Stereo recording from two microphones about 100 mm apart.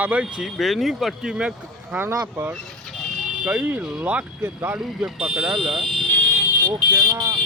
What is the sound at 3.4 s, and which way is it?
Speech, 15° right (ahead or behind).